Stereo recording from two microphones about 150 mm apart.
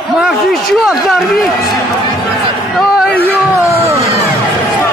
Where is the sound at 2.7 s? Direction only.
5° left (ahead or behind).